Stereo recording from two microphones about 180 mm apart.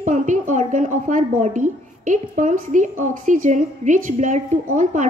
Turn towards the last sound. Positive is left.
turn(degrees=-45)  # may be behind; listen again after turning